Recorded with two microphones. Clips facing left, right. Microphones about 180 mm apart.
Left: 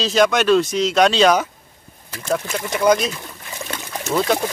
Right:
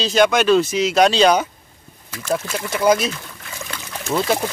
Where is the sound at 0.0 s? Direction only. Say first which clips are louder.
Right 1 dB; centre (ahead or behind).